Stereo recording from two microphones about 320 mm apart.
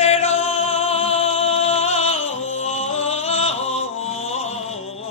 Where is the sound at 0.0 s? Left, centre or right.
Centre.